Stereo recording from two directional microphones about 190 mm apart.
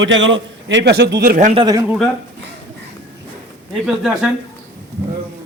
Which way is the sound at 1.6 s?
20° right (ahead or behind).